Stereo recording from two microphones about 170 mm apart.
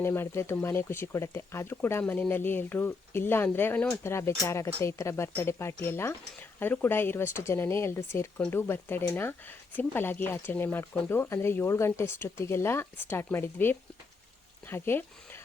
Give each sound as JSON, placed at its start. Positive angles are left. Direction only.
{"t": 0.0, "sound": "speech", "side_deg": 15}